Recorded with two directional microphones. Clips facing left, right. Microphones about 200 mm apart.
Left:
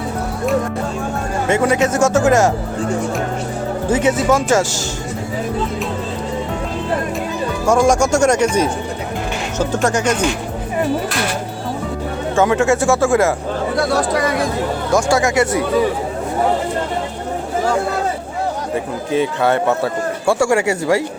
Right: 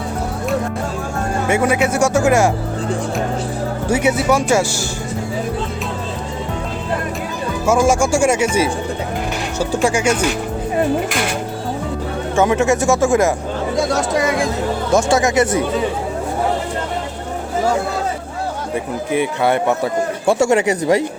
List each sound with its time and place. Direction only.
1.5 s speech: 10° right (ahead or behind)
3.8 s speech: 10° right (ahead or behind)
7.7 s speech: 5° right (ahead or behind)
12.4 s speech: 20° right (ahead or behind)
14.9 s speech: 20° right (ahead or behind)
19.1 s speech: 15° right (ahead or behind)